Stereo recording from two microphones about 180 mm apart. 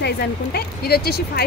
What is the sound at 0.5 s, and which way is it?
Speech, 60° left (ahead or behind).